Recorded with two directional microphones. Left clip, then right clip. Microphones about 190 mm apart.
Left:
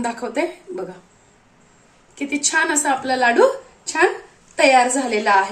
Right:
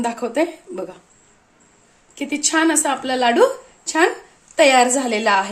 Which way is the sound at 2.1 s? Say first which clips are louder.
Even; 45° right (ahead or behind).